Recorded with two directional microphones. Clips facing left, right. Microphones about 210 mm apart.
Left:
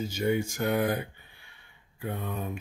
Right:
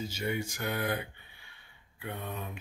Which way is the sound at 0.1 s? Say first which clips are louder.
Left 7 dB; 45° left (ahead or behind).